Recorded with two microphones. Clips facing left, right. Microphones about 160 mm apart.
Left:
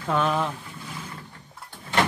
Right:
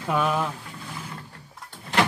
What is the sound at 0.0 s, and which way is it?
Speech, 10° right (ahead or behind).